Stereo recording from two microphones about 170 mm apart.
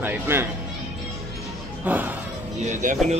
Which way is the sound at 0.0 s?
15° right (ahead or behind).